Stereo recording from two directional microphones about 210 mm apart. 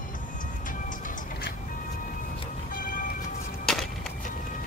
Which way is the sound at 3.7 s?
Centre (ahead or behind).